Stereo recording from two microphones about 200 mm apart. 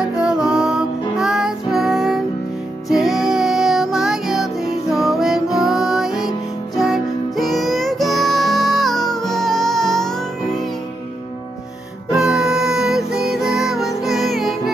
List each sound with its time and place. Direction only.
0.0 s music: 5° right (ahead or behind)
12.1 s music: 5° right (ahead or behind)